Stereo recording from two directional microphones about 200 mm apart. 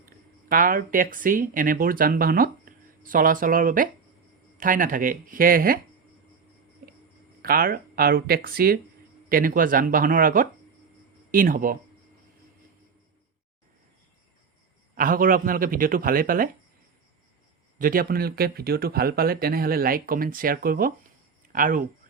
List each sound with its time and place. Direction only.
0.4 s speech: 45° right (ahead or behind)
7.4 s speech: 45° right (ahead or behind)
14.9 s speech: 45° right (ahead or behind)
17.7 s speech: 45° right (ahead or behind)